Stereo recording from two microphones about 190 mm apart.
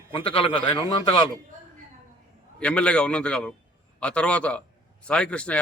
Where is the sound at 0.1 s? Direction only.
30° left (ahead or behind).